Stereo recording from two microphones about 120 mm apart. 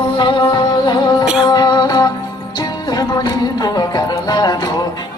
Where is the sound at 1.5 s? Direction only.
35° left (ahead or behind).